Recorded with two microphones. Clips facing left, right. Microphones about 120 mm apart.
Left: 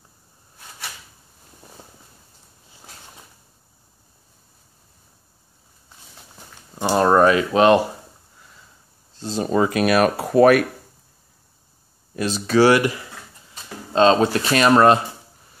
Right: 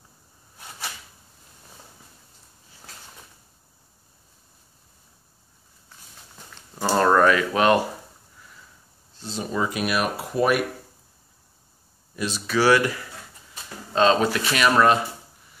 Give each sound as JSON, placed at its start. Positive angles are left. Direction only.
{"t": 6.8, "sound": "speech", "side_deg": 20}
{"t": 9.2, "sound": "speech", "side_deg": 40}
{"t": 9.8, "sound": "speech", "side_deg": 65}
{"t": 12.2, "sound": "speech", "side_deg": 35}
{"t": 12.6, "sound": "speech", "side_deg": 20}